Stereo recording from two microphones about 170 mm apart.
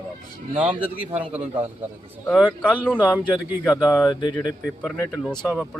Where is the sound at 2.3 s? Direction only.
10° right (ahead or behind).